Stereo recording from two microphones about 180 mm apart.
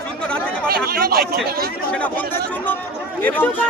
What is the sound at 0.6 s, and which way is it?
Speech, 60° right (ahead or behind).